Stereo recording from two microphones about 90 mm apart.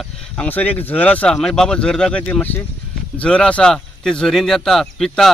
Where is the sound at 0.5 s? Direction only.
15° left (ahead or behind).